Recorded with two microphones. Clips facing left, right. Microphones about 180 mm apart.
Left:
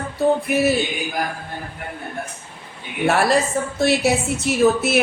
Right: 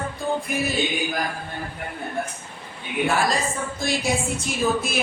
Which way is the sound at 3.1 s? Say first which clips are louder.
Left 7 dB; 70° left (ahead or behind).